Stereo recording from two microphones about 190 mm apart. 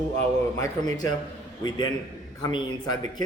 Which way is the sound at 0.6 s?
20° left (ahead or behind).